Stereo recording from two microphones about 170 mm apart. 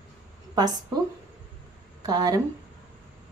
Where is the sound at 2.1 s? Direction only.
20° right (ahead or behind).